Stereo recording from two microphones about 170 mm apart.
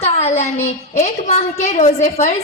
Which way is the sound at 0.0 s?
40° left (ahead or behind).